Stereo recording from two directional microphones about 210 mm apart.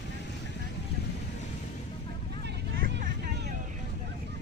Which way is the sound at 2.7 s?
45° right (ahead or behind).